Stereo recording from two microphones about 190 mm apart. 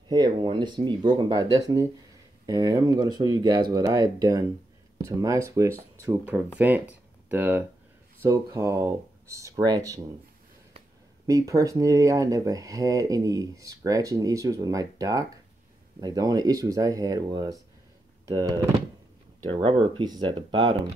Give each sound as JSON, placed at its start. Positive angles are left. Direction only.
{"t": 0.1, "sound": "speech", "side_deg": -25}
{"t": 11.2, "sound": "speech", "side_deg": -15}